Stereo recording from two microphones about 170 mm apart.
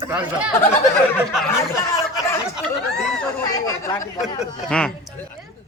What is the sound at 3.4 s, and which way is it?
Speech, 20° left (ahead or behind).